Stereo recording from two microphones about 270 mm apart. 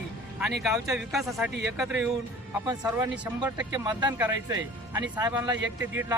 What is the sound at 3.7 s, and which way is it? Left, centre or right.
Speech, centre.